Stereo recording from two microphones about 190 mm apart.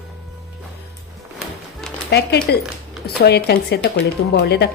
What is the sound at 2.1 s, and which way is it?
A woman's voice, 60° left (ahead or behind).